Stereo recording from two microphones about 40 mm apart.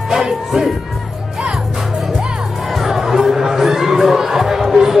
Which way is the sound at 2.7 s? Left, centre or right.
Centre.